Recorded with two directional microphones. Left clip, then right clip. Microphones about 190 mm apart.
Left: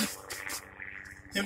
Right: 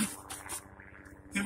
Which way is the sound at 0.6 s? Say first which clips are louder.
Left 9 dB; 60° right (ahead or behind).